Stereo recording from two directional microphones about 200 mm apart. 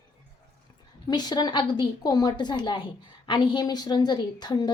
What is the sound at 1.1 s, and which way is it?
A woman's voice, 20° left (ahead or behind).